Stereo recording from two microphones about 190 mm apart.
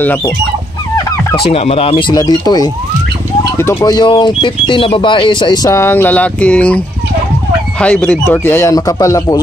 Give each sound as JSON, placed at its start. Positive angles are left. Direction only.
{"t": 1.5, "sound": "speech", "side_deg": 30}
{"t": 7.8, "sound": "speech", "side_deg": 5}